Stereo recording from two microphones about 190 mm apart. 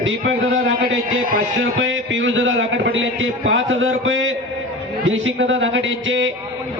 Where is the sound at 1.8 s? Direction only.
85° right.